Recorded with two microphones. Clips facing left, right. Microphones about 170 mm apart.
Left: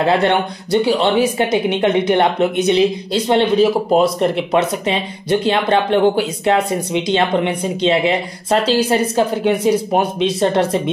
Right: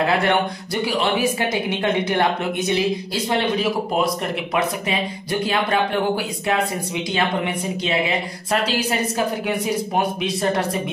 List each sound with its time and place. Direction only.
0.0 s speech: 25° left (ahead or behind)